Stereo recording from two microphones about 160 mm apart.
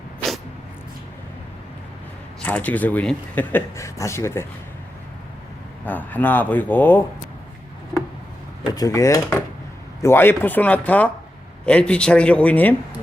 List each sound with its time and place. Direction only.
2.4 s speech: 10° left (ahead or behind)
5.8 s speech: 10° left (ahead or behind)
8.7 s speech: 20° left (ahead or behind)